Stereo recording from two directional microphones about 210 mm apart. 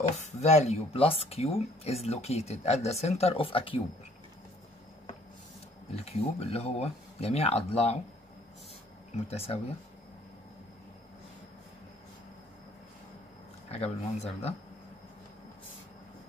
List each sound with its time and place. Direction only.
0.2 s speech: 30° left (ahead or behind)
5.9 s speech: 30° left (ahead or behind)
9.3 s speech: 30° left (ahead or behind)
13.7 s speech: 30° left (ahead or behind)